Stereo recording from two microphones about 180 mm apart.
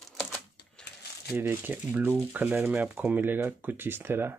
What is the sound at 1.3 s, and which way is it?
Speech, 10° right (ahead or behind).